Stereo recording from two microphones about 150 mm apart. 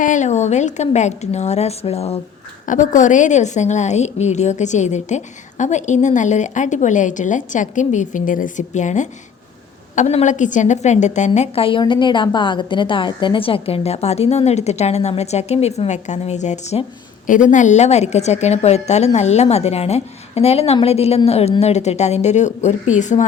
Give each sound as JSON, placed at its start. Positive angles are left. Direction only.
{"t": 0.0, "sound": "a woman's voice", "side_deg": 55}
{"t": 2.6, "sound": "a woman's voice", "side_deg": 60}
{"t": 11.3, "sound": "a woman's voice", "side_deg": 40}